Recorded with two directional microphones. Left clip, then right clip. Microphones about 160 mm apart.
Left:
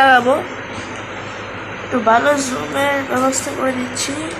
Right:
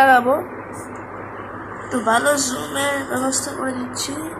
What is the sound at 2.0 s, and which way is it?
A man's voice, centre (ahead or behind).